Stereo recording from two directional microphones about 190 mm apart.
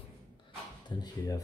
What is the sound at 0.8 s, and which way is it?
Speech, 20° left (ahead or behind).